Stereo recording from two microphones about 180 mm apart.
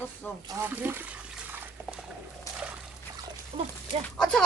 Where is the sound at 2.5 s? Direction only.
15° left (ahead or behind).